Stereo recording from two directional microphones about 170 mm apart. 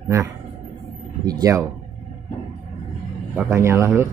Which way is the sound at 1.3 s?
20° right (ahead or behind).